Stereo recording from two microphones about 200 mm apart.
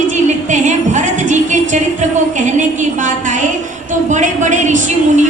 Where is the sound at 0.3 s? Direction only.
35° right (ahead or behind).